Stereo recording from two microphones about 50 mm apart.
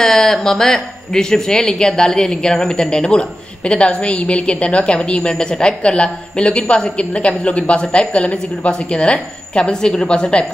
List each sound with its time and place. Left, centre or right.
0.0 s a woman's voice: centre